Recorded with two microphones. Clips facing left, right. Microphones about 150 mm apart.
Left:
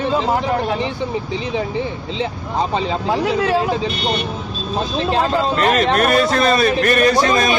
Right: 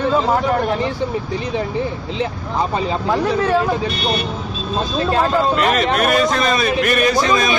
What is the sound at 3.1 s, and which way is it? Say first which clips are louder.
Speech: right 1 dB; 15° left (ahead or behind).